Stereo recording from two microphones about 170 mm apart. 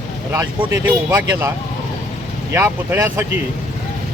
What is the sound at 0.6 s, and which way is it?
Speech, 15° right (ahead or behind).